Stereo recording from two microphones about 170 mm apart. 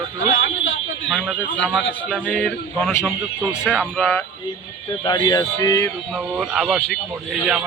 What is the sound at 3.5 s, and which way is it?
Speech, 5° right (ahead or behind).